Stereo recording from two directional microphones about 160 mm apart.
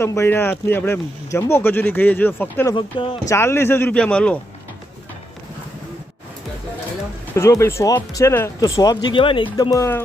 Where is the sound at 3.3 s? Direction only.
15° left (ahead or behind).